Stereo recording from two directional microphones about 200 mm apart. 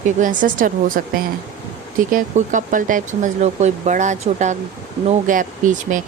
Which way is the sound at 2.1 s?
40° right (ahead or behind).